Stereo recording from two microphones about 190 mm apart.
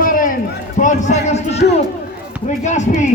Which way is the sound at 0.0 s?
45° left (ahead or behind).